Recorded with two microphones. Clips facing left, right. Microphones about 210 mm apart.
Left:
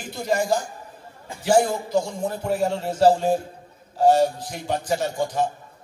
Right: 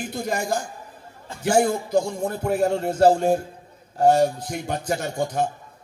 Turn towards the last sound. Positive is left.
turn(degrees=-55)  # may be behind; listen again after turning